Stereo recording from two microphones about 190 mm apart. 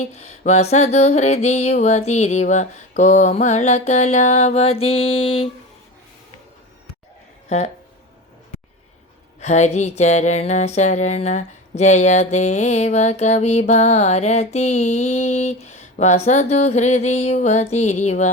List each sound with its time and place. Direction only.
0.0 s music: 35° left (ahead or behind)
9.4 s music: 35° left (ahead or behind)